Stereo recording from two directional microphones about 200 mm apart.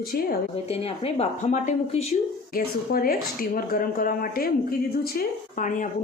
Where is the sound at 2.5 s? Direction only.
45° left (ahead or behind).